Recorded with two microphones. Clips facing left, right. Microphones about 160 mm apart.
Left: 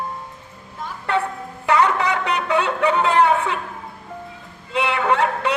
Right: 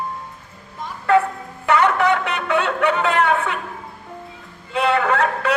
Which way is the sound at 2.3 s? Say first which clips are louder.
Even; 35° left (ahead or behind).